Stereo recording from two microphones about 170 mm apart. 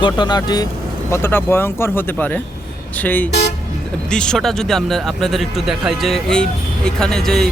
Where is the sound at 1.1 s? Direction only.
15° left (ahead or behind).